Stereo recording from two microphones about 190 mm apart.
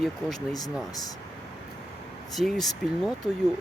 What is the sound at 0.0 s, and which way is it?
Speech, centre (ahead or behind).